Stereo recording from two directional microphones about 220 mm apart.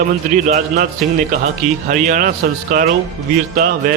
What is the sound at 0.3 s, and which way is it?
Speech, 35° right (ahead or behind).